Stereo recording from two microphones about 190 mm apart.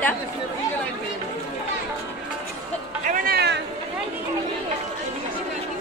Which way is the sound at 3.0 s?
45° right (ahead or behind).